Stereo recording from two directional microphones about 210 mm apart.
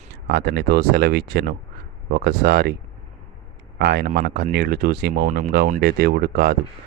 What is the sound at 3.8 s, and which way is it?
Speech, 50° right (ahead or behind).